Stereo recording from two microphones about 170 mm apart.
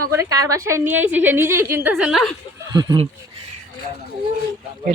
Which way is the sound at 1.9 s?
Centre (ahead or behind).